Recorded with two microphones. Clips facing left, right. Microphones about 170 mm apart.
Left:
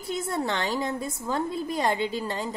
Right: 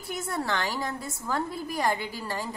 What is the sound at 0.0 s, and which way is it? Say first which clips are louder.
A woman's voice: left 3 dB; 20° left (ahead or behind).